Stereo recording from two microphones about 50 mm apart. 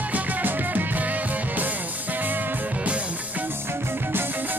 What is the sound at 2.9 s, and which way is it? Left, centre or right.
Music, right.